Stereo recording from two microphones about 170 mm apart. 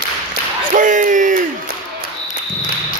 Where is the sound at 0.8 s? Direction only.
50° right (ahead or behind).